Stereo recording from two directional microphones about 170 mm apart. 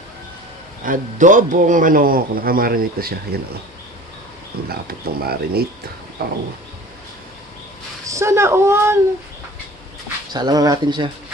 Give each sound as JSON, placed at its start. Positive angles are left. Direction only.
{"t": 0.8, "sound": "a man's voice", "side_deg": -50}
{"t": 4.8, "sound": "a man's voice", "side_deg": -65}
{"t": 6.2, "sound": "bird", "side_deg": -70}
{"t": 8.1, "sound": "speech", "side_deg": -15}
{"t": 10.3, "sound": "speech", "side_deg": -25}